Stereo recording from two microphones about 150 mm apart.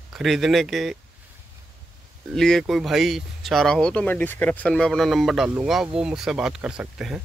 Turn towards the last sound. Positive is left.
turn(degrees=-5)  # may be behind; listen again after turning